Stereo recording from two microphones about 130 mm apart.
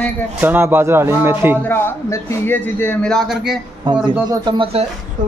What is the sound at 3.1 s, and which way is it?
Speech, centre (ahead or behind).